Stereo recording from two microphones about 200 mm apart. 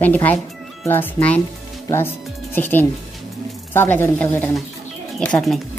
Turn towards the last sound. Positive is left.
turn(degrees=5)  # may be behind; listen again after turning